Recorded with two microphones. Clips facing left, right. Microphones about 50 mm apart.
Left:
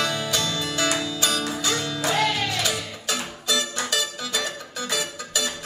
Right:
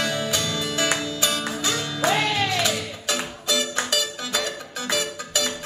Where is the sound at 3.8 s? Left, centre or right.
Centre.